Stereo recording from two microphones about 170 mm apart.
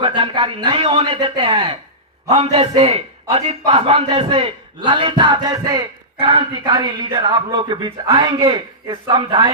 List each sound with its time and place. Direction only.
0.0 s a man's voice: 30° right (ahead or behind)